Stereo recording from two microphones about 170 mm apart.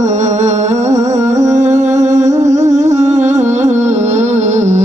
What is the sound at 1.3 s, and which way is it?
Music, 45° right (ahead or behind).